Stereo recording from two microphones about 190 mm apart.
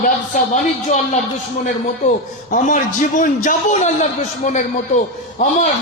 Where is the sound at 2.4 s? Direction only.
45° left (ahead or behind).